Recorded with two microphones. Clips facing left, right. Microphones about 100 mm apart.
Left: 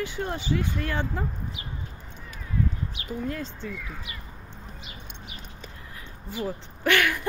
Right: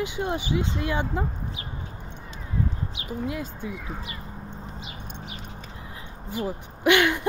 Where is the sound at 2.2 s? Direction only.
25° right (ahead or behind).